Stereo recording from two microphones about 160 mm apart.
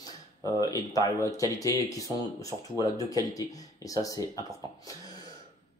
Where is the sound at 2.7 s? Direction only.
20° left (ahead or behind).